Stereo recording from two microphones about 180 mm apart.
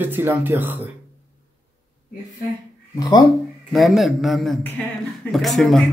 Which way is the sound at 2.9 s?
20° left (ahead or behind).